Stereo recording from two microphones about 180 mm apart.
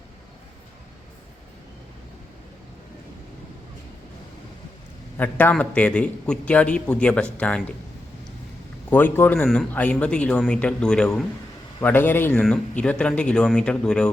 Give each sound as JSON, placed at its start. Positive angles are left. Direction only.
{"t": 5.1, "sound": "a man's voice", "side_deg": 10}
{"t": 8.9, "sound": "a man's voice", "side_deg": 10}